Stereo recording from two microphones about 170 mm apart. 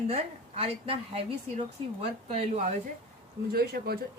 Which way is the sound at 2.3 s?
40° right (ahead or behind).